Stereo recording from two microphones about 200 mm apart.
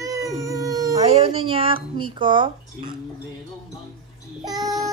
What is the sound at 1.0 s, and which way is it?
Music, 30° right (ahead or behind).